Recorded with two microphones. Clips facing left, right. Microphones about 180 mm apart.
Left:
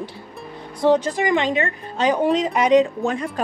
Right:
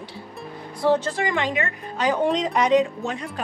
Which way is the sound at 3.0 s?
50° left (ahead or behind).